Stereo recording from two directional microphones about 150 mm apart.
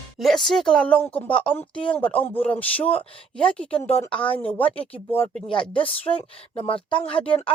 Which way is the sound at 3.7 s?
40° left (ahead or behind).